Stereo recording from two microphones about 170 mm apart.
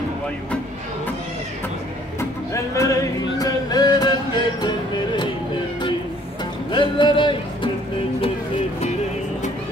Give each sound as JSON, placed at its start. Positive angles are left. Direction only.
{"t": 2.1, "sound": "music", "side_deg": 15}
{"t": 6.7, "sound": "music", "side_deg": 30}